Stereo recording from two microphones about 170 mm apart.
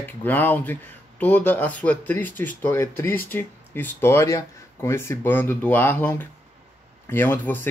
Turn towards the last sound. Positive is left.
turn(degrees=10)  # may be behind; listen again after turning